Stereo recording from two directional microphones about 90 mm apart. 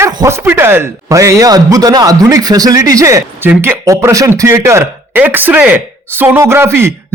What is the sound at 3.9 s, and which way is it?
Speech, 35° right (ahead or behind).